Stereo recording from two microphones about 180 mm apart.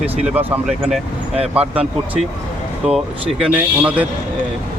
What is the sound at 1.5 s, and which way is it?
Speech, 10° right (ahead or behind).